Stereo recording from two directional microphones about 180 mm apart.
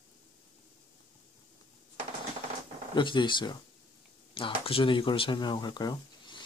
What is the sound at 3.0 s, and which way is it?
Speech, 25° left (ahead or behind).